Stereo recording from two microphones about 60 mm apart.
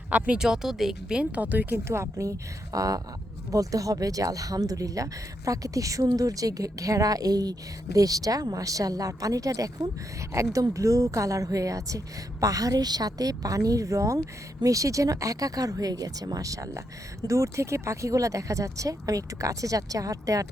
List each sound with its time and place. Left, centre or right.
0.1 s speech: right
0.3 s speech: centre
1.4 s speech: right
1.9 s speech: right
2.7 s a woman's voice: right